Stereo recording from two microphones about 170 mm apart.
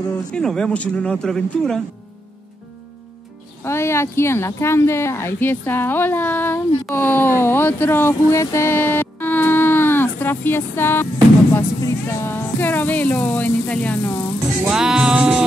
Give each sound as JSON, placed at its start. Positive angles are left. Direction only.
{"t": 0.3, "sound": "speech", "side_deg": 5}
{"t": 3.6, "sound": "speech", "side_deg": 15}
{"t": 14.7, "sound": "speech", "side_deg": -5}